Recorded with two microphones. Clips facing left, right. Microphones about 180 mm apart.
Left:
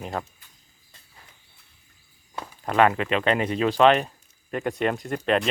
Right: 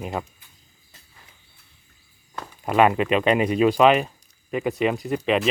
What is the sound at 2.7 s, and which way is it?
Speech, 15° right (ahead or behind).